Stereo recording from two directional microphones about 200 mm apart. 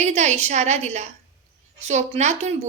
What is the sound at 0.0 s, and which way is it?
A woman's voice, 35° right (ahead or behind).